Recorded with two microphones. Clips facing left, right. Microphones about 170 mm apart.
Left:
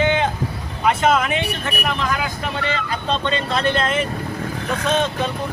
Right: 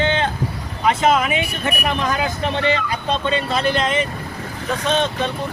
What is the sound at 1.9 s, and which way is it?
Speech, 20° right (ahead or behind).